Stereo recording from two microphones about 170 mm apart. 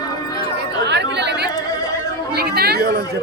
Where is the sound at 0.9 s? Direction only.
90° right.